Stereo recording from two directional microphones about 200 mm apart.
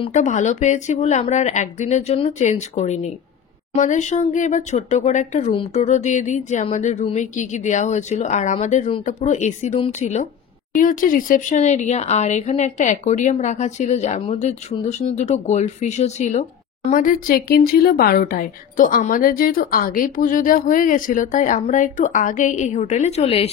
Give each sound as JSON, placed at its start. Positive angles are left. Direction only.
{"t": 0.0, "sound": "speech", "side_deg": 35}